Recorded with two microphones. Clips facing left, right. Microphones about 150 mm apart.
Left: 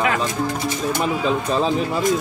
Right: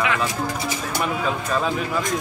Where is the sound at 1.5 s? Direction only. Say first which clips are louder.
Left 3 dB; 30° left (ahead or behind).